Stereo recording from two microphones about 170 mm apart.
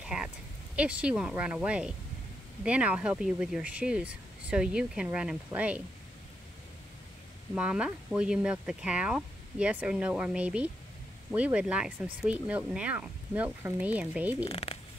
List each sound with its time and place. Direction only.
0.0 s a sound: 5° right (ahead or behind)
0.7 s speech: 5° right (ahead or behind)
7.5 s speech: 5° right (ahead or behind)
14.5 s speech: 35° left (ahead or behind)